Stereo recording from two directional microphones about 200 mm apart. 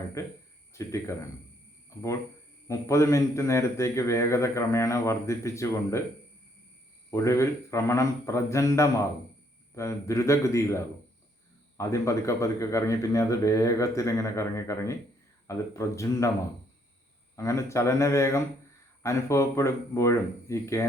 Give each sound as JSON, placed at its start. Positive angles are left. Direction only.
{"t": 0.2, "sound": "a man's voice", "side_deg": 15}
{"t": 2.6, "sound": "a man's voice", "side_deg": 15}
{"t": 7.1, "sound": "a man's voice", "side_deg": 15}
{"t": 17.3, "sound": "a man's voice", "side_deg": 15}